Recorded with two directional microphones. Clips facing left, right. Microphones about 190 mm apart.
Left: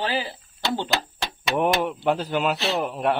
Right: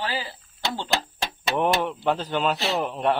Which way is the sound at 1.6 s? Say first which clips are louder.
Left 1 dB; 10° left (ahead or behind).